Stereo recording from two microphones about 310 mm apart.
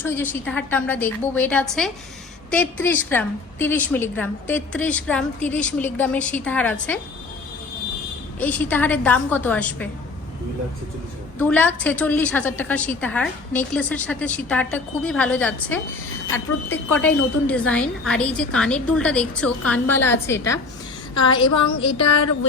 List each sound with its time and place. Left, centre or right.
0.0 s a woman's voice: centre
8.4 s a woman's voice: centre
11.3 s a woman's voice: centre
21.2 s a sound: centre